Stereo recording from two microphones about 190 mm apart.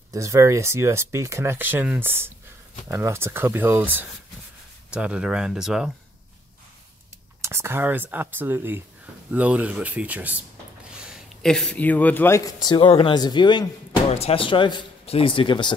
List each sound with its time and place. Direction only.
0.1 s speech: 15° right (ahead or behind)
7.4 s speech: 15° right (ahead or behind); by 15.7 s 25° left (ahead or behind)